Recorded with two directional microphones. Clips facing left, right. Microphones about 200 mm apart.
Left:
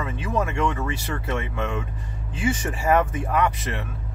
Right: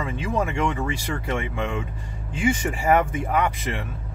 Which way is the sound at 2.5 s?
25° right (ahead or behind).